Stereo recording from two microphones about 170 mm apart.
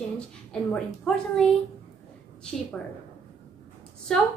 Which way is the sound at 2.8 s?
5° left (ahead or behind).